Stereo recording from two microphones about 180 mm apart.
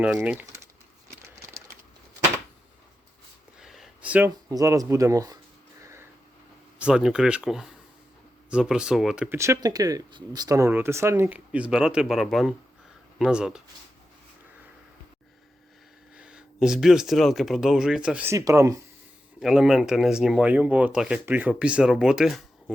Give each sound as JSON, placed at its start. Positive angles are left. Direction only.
{"t": 0.0, "sound": "speech", "side_deg": -5}
{"t": 3.6, "sound": "speech", "side_deg": 0}
{"t": 5.8, "sound": "a sound", "side_deg": -15}
{"t": 6.7, "sound": "speech", "side_deg": -5}
{"t": 16.1, "sound": "speech", "side_deg": -5}
{"t": 19.4, "sound": "speech", "side_deg": -5}